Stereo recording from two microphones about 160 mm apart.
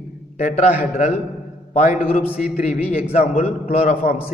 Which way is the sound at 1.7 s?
50° left (ahead or behind).